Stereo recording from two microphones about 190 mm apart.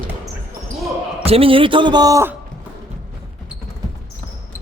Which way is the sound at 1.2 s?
30° right (ahead or behind).